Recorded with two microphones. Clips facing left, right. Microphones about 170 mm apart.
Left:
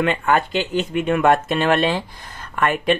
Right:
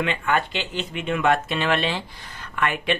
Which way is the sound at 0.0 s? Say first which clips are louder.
Left 5 dB; 45° left (ahead or behind).